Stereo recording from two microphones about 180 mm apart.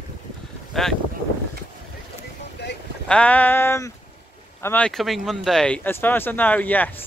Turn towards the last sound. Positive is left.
turn(degrees=10)  # may be behind; listen again after turning